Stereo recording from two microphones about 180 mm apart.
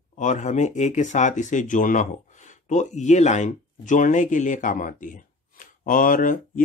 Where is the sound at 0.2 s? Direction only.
40° left (ahead or behind).